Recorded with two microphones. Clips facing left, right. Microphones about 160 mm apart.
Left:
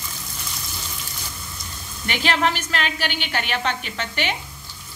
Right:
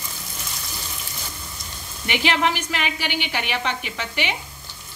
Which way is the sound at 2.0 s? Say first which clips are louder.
Even; 15° right (ahead or behind).